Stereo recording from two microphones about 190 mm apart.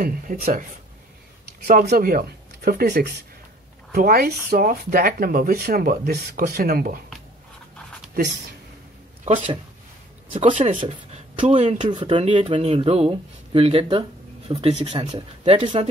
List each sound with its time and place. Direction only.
0.0 s speech: 45° right (ahead or behind)
1.7 s speech: 50° right (ahead or behind)
9.2 s speech: 40° right (ahead or behind)